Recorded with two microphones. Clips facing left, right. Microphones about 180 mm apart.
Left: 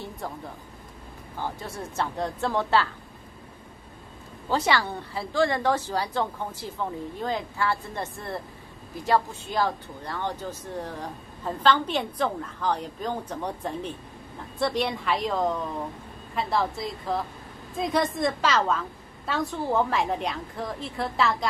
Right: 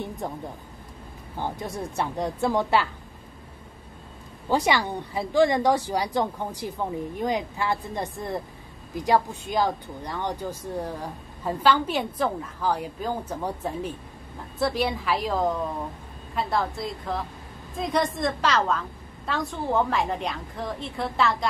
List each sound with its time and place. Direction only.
0.2 s speech: 20° right (ahead or behind)
1.4 s speech: 15° right (ahead or behind)
4.5 s a woman's voice: 15° right (ahead or behind); by 21.5 s centre (ahead or behind)